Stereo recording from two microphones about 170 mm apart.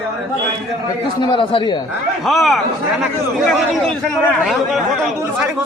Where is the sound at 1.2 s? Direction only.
30° left (ahead or behind).